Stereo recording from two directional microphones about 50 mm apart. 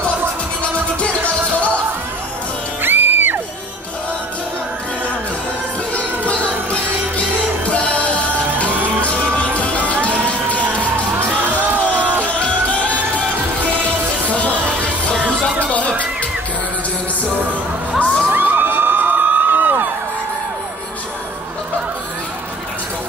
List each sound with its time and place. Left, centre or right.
1.5 s music: left
2.8 s music: right
5.9 s music: left
11.1 s music: right
12.4 s music: left
14.8 s music: left
17.9 s children shouting: left
18.2 s crowd: right